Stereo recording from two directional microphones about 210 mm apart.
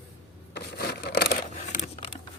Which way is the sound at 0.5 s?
50° left (ahead or behind).